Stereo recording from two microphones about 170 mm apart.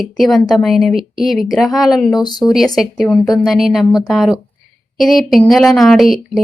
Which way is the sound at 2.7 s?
Centre (ahead or behind).